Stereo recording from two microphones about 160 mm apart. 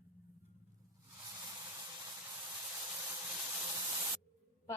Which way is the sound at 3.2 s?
20° right (ahead or behind).